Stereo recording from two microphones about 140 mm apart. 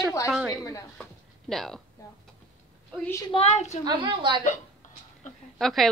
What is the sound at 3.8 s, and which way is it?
Speech, 35° right (ahead or behind).